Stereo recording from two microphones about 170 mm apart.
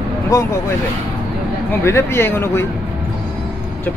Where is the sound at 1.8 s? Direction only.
15° left (ahead or behind).